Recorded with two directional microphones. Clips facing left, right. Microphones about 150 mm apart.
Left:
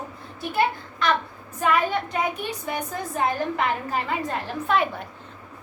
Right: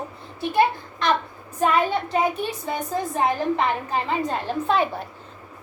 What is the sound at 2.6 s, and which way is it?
A woman's voice, 25° right (ahead or behind).